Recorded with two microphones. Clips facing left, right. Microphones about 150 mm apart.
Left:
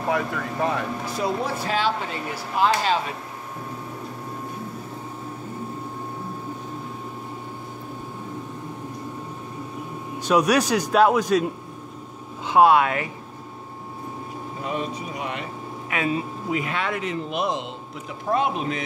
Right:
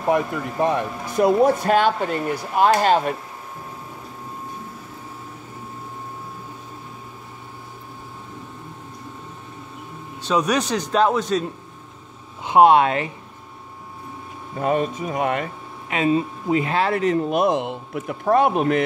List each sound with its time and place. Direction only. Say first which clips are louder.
0.1 s speech: right 5 dB; 20° right (ahead or behind)
1.1 s speech: right 11 dB; 50° right (ahead or behind)
10.2 s a man's voice: left 2 dB; 10° left (ahead or behind)
12.4 s speech: right 3 dB; 25° right (ahead or behind)
14.6 s speech: right 8 dB; 50° right (ahead or behind)
16.5 s speech: right 7 dB; 35° right (ahead or behind); by 18.8 s 60° right (ahead or behind)